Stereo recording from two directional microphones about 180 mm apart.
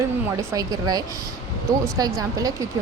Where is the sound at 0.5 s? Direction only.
20° right (ahead or behind).